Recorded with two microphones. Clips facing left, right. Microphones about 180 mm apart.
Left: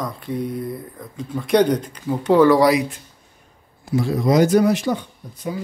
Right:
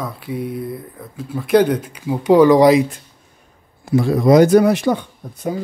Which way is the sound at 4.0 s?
60° right (ahead or behind).